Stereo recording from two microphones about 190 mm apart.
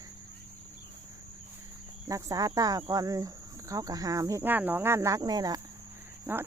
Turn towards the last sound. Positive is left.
turn(degrees=-10)  # may be behind; listen again after turning